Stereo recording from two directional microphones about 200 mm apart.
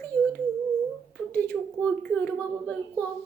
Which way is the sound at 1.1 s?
10° left (ahead or behind).